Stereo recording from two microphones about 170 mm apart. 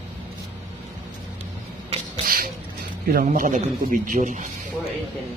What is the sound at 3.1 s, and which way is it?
A man's voice, 55° right (ahead or behind).